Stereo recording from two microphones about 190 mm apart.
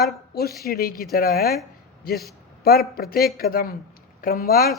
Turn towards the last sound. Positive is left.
turn(degrees=50)  # may be behind; listen again after turning